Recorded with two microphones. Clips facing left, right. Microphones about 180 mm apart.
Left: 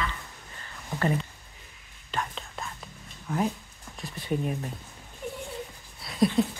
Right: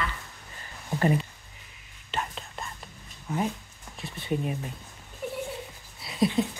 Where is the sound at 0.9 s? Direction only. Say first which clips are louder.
Right 3 dB; 20° right (ahead or behind).